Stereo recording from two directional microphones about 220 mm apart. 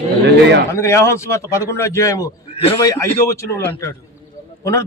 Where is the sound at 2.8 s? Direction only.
15° left (ahead or behind).